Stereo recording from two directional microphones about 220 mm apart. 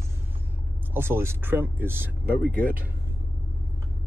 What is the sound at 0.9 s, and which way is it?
Speech, 10° right (ahead or behind).